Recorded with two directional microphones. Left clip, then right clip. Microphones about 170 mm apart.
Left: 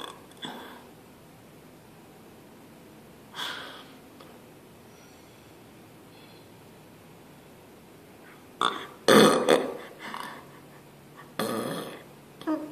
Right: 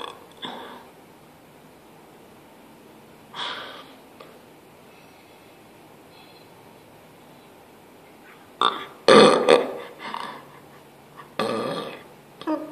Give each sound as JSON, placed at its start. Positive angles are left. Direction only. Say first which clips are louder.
{"t": 0.0, "sound": "burping", "louder": "right 4 dB", "side_deg": 20}
{"t": 3.3, "sound": "snort", "louder": "right 4 dB", "side_deg": 20}
{"t": 8.5, "sound": "burping", "louder": "right 5 dB", "side_deg": 20}
{"t": 11.3, "sound": "burping", "louder": "right 5 dB", "side_deg": 20}